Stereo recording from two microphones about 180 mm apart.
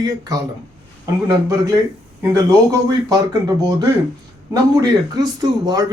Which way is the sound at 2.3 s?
20° right (ahead or behind).